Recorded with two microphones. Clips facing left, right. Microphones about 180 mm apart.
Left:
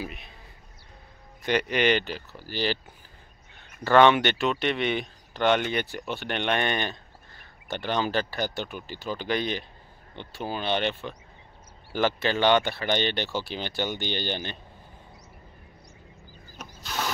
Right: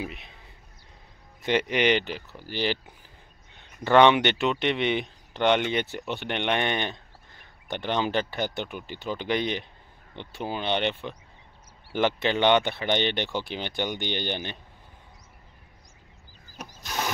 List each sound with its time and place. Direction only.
0.0 s speech: 20° right (ahead or behind)
1.4 s speech: 20° right (ahead or behind)
16.5 s wood: 15° right (ahead or behind)